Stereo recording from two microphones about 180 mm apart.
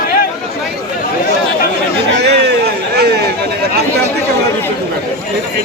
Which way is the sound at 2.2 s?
65° right (ahead or behind).